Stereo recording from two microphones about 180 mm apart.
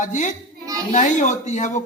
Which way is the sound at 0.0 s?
45° left (ahead or behind).